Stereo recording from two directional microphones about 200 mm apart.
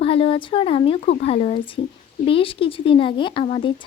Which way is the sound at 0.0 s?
30° left (ahead or behind).